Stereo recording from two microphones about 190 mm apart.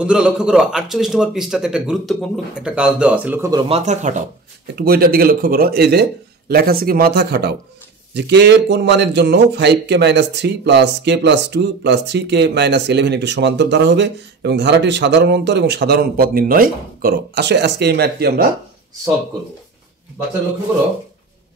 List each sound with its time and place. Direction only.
0.0 s a man's voice: 5° right (ahead or behind)
3.6 s speech: 35° right (ahead or behind)
4.7 s speech: 55° right (ahead or behind)